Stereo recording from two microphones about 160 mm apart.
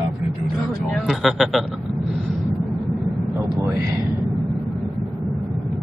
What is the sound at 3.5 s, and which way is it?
Speech, 20° right (ahead or behind).